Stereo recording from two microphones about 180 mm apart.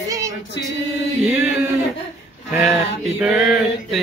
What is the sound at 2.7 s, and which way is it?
Male singing, 10° right (ahead or behind).